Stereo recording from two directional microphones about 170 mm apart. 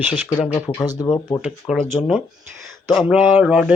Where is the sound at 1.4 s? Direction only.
5° right (ahead or behind).